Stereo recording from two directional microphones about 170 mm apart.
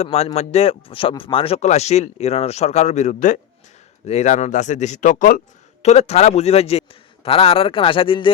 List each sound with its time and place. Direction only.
0.0 s speech: 35° left (ahead or behind)
5.8 s speech: 40° left (ahead or behind)